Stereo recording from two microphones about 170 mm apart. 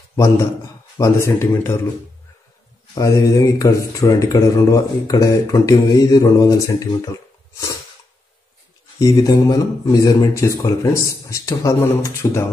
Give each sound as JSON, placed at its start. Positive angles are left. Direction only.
{"t": 0.1, "sound": "a man's voice", "side_deg": 15}
{"t": 2.9, "sound": "speech", "side_deg": 20}
{"t": 9.0, "sound": "speech", "side_deg": 20}